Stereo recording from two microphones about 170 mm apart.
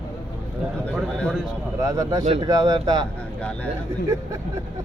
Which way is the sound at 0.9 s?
Centre (ahead or behind).